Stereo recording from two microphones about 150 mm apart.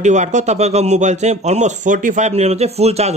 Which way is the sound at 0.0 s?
50° right (ahead or behind).